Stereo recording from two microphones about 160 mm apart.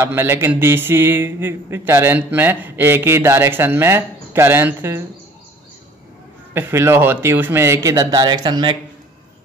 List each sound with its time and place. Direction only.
0.0 s speech: 15° right (ahead or behind)
6.5 s speech: 15° right (ahead or behind)